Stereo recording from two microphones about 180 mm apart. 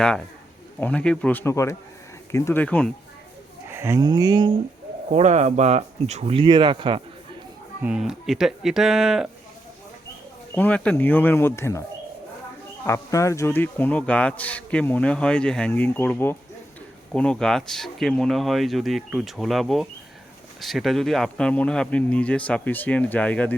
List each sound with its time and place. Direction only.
0.8 s speech: 5° left (ahead or behind)
3.7 s speech: 15° right (ahead or behind)
5.1 s speech: 40° right (ahead or behind)
7.8 s speech: 5° right (ahead or behind)
10.5 s speech: 10° left (ahead or behind)
12.8 s speech: 15° left (ahead or behind)